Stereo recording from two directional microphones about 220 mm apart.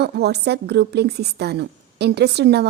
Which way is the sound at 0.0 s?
50° right (ahead or behind).